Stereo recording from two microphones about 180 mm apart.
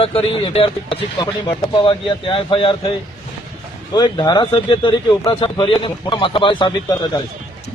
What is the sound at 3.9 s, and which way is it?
Speech, 25° left (ahead or behind).